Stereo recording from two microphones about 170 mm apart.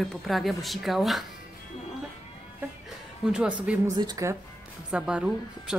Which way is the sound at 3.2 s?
5° right (ahead or behind).